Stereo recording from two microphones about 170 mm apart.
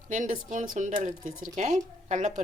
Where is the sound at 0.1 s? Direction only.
50° right (ahead or behind).